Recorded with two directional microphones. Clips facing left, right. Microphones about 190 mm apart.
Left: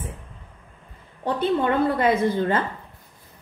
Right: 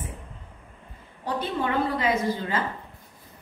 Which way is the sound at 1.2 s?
55° left (ahead or behind).